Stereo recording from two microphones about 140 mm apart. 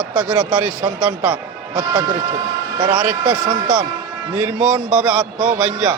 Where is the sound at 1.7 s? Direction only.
30° right (ahead or behind).